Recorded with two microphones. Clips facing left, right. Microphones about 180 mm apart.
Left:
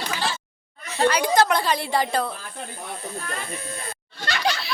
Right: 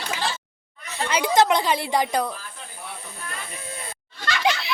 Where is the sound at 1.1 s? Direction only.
20° right (ahead or behind).